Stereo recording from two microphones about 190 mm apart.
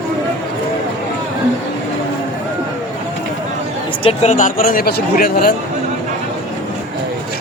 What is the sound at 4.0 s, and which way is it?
Speech, 35° left (ahead or behind).